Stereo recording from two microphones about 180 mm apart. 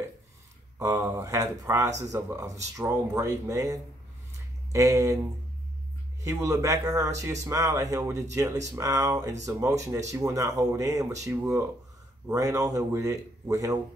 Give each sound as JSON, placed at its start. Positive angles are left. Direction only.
{"t": 0.7, "sound": "speech", "side_deg": -15}
{"t": 6.2, "sound": "speech", "side_deg": -15}